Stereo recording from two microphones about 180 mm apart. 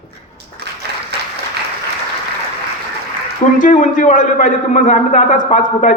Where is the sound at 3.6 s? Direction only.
45° left (ahead or behind).